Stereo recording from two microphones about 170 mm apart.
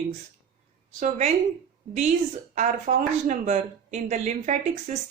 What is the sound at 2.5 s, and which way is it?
Speech, 45° right (ahead or behind).